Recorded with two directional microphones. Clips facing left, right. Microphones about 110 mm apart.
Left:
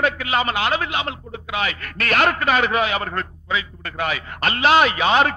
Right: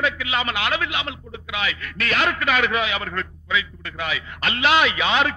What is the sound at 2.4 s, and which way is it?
A man's voice, 35° left (ahead or behind).